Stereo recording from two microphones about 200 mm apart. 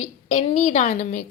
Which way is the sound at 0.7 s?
35° left (ahead or behind).